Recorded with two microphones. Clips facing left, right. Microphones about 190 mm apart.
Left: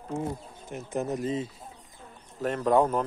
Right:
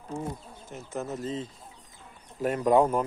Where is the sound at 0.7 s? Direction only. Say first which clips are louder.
Left 4 dB; 15° left (ahead or behind).